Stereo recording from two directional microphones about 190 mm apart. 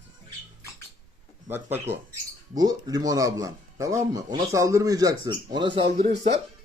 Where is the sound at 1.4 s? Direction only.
10° right (ahead or behind).